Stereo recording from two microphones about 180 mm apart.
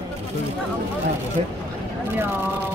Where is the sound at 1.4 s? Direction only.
35° right (ahead or behind).